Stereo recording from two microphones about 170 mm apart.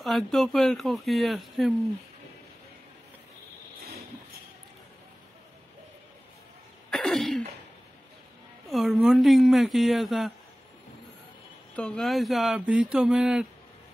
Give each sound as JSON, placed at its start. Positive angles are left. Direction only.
{"t": 0.0, "sound": "speech", "side_deg": 0}
{"t": 6.9, "sound": "cough", "side_deg": 0}
{"t": 8.6, "sound": "speech", "side_deg": 0}
{"t": 11.7, "sound": "speech", "side_deg": 5}